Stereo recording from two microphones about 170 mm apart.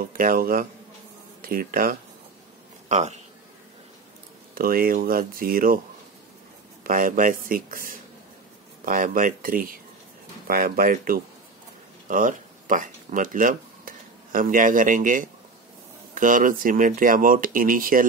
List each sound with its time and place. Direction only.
0.1 s speech: 55° right (ahead or behind)
2.9 s speech: 40° right (ahead or behind)
4.6 s speech: 60° right (ahead or behind)
6.8 s speech: 55° right (ahead or behind)